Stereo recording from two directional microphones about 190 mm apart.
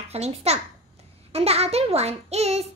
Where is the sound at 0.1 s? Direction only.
35° right (ahead or behind).